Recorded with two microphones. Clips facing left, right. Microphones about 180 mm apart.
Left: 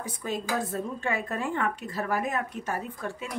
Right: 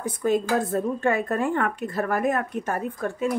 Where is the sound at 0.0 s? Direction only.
55° right (ahead or behind).